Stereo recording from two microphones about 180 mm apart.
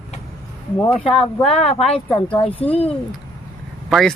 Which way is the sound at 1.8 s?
5° left (ahead or behind).